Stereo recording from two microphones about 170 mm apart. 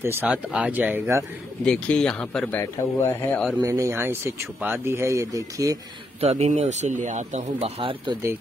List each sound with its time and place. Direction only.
0.0 s speech: 10° right (ahead or behind)
1.6 s speech: 5° left (ahead or behind)
3.6 s speech: 20° right (ahead or behind)
6.2 s speech: 40° right (ahead or behind)
8.1 s speech: 15° right (ahead or behind)